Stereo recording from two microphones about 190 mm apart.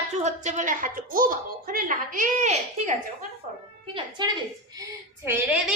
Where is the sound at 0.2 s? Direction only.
40° right (ahead or behind).